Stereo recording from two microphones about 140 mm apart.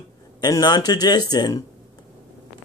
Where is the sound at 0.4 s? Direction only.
30° left (ahead or behind).